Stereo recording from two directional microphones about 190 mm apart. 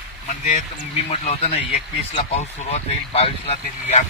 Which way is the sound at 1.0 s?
35° left (ahead or behind).